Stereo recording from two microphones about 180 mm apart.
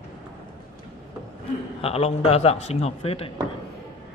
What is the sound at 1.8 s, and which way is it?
A man's voice, 35° left (ahead or behind).